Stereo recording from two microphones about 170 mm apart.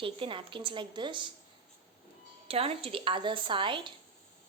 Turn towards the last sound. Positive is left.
turn(degrees=-30)  # may be behind; listen again after turning